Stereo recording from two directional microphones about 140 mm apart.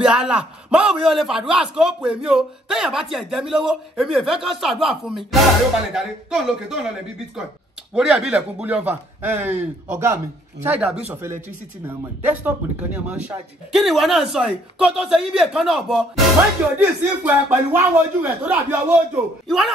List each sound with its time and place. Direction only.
0.0 s a man's voice: 5° right (ahead or behind)
7.9 s a man's voice: 5° right (ahead or behind)
16.7 s speech: 15° right (ahead or behind)
19.4 s a man's voice: centre (ahead or behind)